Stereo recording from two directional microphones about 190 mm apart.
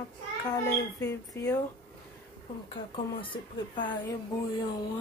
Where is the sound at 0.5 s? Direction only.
15° left (ahead or behind).